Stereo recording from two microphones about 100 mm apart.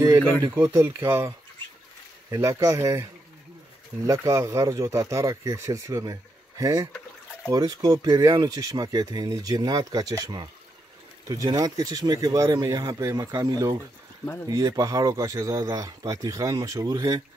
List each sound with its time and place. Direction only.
0.6 s speech: 25° right (ahead or behind)
2.3 s speech: 30° right (ahead or behind)